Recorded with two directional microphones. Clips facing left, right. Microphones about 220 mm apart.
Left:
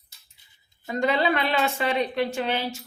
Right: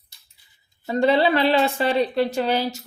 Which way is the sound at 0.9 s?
30° right (ahead or behind).